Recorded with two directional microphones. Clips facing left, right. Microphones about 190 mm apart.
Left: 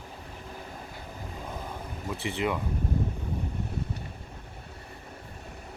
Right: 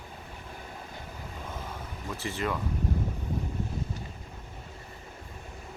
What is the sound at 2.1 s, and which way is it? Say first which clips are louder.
Speech: left 2 dB; 60° left (ahead or behind).